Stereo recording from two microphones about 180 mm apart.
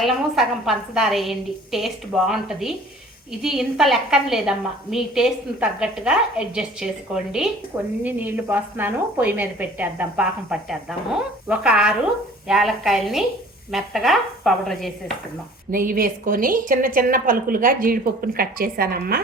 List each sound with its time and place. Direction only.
0.0 s a woman's voice: centre (ahead or behind)
15.7 s a woman's voice: 50° right (ahead or behind)